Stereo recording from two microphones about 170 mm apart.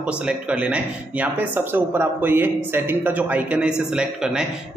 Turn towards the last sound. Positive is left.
turn(degrees=-5)  # may be behind; listen again after turning